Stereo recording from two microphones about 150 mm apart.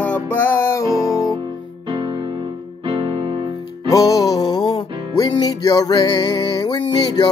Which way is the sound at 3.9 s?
25° left (ahead or behind).